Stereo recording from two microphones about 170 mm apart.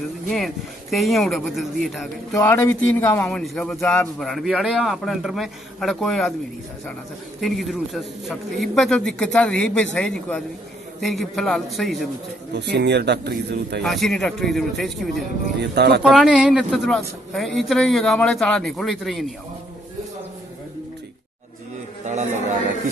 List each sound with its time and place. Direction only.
0.3 s a man's voice: centre (ahead or behind)
2.3 s a man's voice: 15° left (ahead or behind)
7.3 s a man's voice: centre (ahead or behind)
12.7 s speech: 85° right
13.8 s a man's voice: centre (ahead or behind)
15.6 s speech: 75° right (ahead or behind)
16.0 s a man's voice: centre (ahead or behind)